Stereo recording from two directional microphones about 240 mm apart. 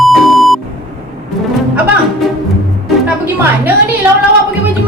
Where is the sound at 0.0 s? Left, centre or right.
Centre.